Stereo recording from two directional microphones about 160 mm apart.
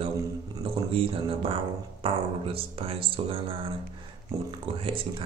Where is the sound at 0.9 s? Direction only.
35° right (ahead or behind).